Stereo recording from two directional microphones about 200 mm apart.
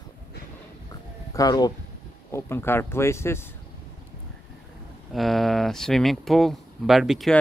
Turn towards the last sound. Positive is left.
turn(degrees=0)  # may be behind; listen again after turning